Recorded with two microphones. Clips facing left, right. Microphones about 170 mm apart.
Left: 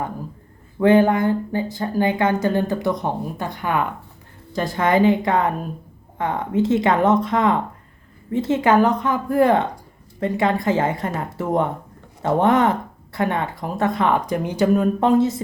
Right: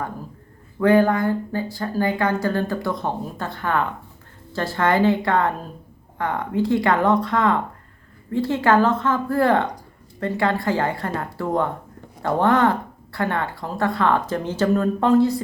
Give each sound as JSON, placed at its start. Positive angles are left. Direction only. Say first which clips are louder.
{"t": 0.8, "sound": "speech", "louder": "left 2 dB", "side_deg": 20}